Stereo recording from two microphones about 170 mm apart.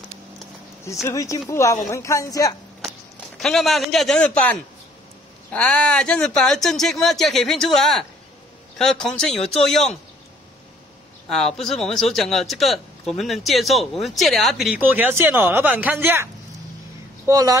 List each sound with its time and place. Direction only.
1.0 s speech: 20° left (ahead or behind)
3.3 s speech: centre (ahead or behind)
11.2 s speech: centre (ahead or behind)
17.3 s speech: 20° right (ahead or behind)